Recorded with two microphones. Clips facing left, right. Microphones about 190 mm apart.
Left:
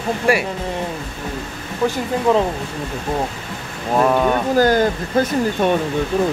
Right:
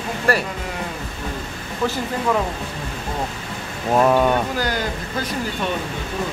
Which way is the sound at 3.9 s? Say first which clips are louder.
Even; centre (ahead or behind).